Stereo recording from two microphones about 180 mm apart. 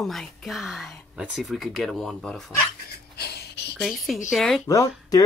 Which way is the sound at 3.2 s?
65° left (ahead or behind).